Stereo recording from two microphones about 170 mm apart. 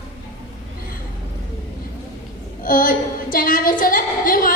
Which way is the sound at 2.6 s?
55° left (ahead or behind).